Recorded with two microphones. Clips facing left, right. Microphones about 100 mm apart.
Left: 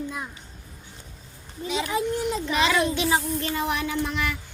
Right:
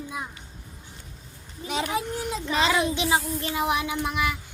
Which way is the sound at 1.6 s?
50° right (ahead or behind).